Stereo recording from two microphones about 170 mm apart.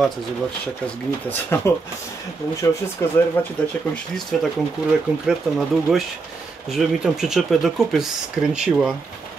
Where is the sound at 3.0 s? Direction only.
15° left (ahead or behind); by 8.9 s 5° right (ahead or behind).